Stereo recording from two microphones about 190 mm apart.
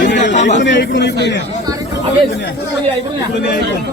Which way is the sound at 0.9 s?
65° left (ahead or behind).